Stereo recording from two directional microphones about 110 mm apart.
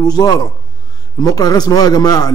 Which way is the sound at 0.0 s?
35° left (ahead or behind).